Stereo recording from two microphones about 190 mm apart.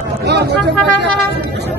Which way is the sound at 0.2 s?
60° right (ahead or behind).